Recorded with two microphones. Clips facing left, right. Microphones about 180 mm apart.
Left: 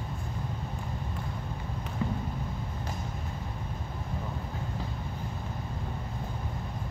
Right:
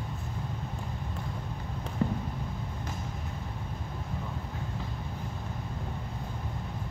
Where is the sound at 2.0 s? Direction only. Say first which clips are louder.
Right 3 dB; 40° right (ahead or behind).